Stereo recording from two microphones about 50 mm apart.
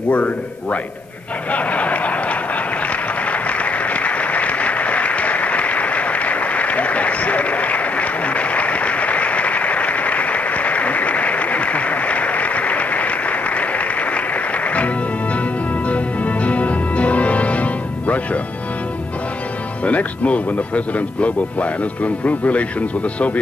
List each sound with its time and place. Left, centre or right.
0.1 s speech: left
1.5 s a sound: left
15.9 s music: left
19.8 s speech: left